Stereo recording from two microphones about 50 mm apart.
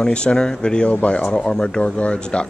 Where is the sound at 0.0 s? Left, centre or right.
Centre.